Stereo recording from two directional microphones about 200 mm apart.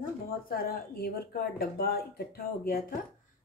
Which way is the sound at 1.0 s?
50° left (ahead or behind).